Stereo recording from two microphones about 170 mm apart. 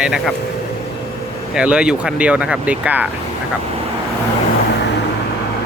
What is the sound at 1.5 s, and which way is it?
Speech, 5° right (ahead or behind).